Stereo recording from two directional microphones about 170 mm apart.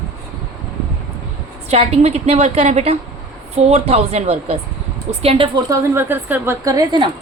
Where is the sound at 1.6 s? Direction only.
35° right (ahead or behind).